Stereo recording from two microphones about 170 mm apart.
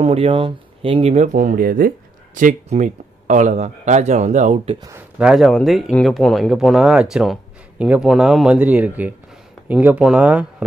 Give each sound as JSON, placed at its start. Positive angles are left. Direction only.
{"t": 0.0, "sound": "speech", "side_deg": -35}
{"t": 4.7, "sound": "speech", "side_deg": -20}
{"t": 5.2, "sound": "speech", "side_deg": 0}